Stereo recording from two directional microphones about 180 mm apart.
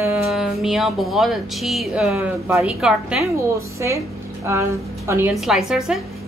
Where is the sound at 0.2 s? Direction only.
Centre (ahead or behind).